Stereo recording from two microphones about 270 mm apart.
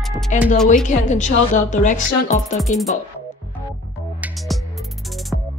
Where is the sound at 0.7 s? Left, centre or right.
Left.